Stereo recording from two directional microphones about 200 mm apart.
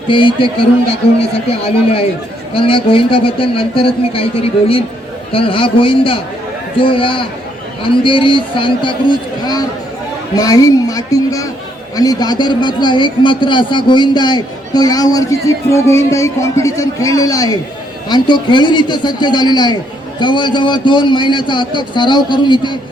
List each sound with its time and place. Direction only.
0.1 s a man's voice: 25° left (ahead or behind)